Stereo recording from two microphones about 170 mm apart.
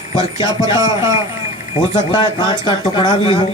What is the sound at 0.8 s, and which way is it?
Speech, 20° right (ahead or behind).